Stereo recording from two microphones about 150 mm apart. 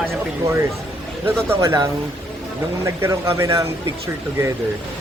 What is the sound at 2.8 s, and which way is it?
Speech, 15° right (ahead or behind).